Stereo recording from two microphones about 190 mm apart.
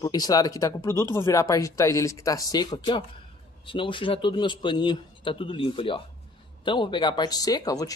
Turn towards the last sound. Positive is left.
turn(degrees=20)  # may be behind; listen again after turning